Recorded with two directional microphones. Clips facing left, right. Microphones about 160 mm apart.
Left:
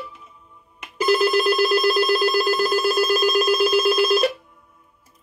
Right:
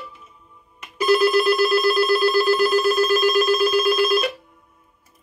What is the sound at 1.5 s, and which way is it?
Telephone bell ringing, 40° left (ahead or behind).